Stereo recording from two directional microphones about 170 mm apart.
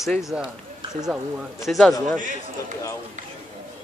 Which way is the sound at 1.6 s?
Centre (ahead or behind).